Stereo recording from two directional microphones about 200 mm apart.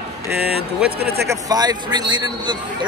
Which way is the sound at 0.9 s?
55° right (ahead or behind).